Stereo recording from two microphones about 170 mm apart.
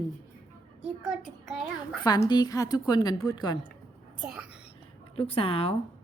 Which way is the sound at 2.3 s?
25° left (ahead or behind).